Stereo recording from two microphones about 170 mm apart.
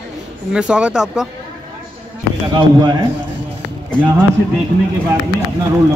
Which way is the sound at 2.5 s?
25° right (ahead or behind).